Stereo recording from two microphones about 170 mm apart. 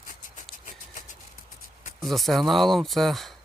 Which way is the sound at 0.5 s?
50° left (ahead or behind).